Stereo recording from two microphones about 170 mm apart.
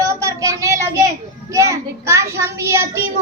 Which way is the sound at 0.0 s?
20° right (ahead or behind).